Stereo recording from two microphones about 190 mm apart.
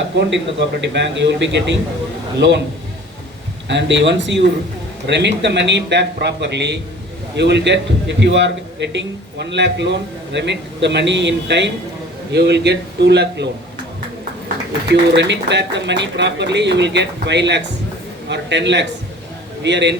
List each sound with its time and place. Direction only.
0.2 s a man's voice: 70° right (ahead or behind)
3.7 s a man's voice: 70° right (ahead or behind)